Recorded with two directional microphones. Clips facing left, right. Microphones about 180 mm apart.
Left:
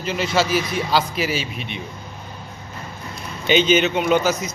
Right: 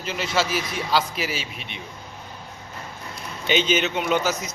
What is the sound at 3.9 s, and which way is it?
Speech, 65° left (ahead or behind).